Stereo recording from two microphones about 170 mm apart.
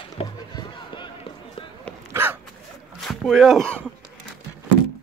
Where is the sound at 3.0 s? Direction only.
Centre (ahead or behind).